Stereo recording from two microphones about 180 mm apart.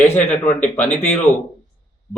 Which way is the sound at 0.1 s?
10° left (ahead or behind).